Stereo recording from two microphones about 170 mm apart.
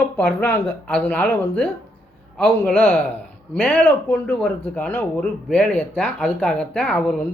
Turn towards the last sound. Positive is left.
turn(degrees=10)  # may be behind; listen again after turning